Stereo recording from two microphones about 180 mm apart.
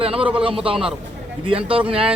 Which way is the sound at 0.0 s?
30° right (ahead or behind).